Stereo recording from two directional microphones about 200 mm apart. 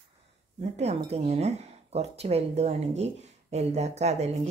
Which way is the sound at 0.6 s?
35° right (ahead or behind).